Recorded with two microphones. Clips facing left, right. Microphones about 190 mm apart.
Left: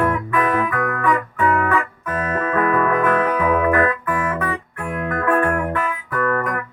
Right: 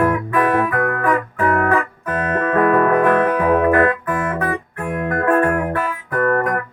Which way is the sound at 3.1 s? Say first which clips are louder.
Right 3 dB; 50° right (ahead or behind).